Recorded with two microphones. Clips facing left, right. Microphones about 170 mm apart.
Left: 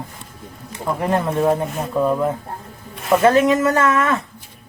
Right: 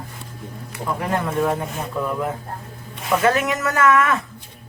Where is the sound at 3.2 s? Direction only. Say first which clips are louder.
Left 7 dB; 30° left (ahead or behind).